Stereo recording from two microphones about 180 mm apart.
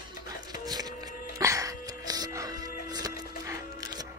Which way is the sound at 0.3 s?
20° right (ahead or behind).